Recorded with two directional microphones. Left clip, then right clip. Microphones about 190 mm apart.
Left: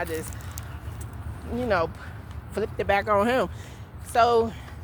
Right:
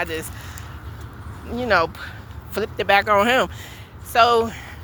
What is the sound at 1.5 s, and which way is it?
A woman's voice, 20° right (ahead or behind).